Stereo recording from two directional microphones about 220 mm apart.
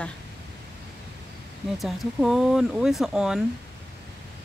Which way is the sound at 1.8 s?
Centre (ahead or behind).